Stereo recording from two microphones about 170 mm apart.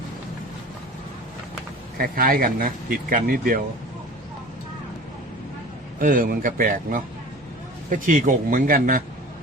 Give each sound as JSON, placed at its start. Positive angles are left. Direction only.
{"t": 2.0, "sound": "speech", "side_deg": -60}
{"t": 6.0, "sound": "a man's voice", "side_deg": -55}